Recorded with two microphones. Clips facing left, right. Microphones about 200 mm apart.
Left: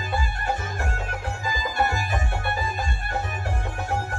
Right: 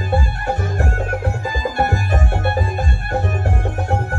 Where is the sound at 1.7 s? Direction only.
55° right (ahead or behind).